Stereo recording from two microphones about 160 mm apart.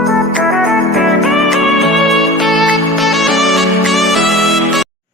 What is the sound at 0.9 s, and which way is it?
Music, centre (ahead or behind).